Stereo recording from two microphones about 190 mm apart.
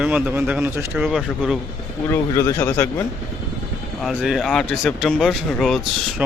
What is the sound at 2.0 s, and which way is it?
Speech, 15° left (ahead or behind).